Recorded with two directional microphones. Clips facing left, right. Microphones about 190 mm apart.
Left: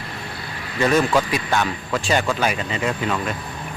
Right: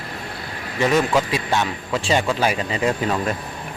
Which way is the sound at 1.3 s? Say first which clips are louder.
Even; 25° right (ahead or behind).